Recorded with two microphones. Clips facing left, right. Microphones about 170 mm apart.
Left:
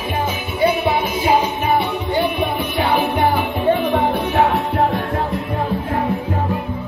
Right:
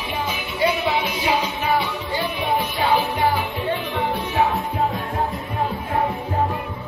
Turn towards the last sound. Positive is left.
turn(degrees=70)  # may be behind; listen again after turning